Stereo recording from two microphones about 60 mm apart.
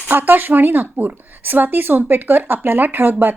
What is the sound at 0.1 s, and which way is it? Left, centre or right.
Speech, right.